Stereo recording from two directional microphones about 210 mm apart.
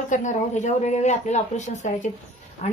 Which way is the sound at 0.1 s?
35° left (ahead or behind).